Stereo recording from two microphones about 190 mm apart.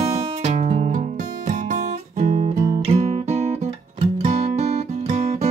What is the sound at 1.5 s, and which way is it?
Guitar, 40° right (ahead or behind).